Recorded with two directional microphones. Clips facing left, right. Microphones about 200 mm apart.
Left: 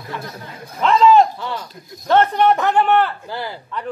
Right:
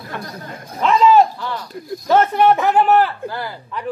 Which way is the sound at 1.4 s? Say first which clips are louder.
Even; 20° left (ahead or behind).